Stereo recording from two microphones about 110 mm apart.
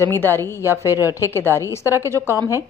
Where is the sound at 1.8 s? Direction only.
25° right (ahead or behind).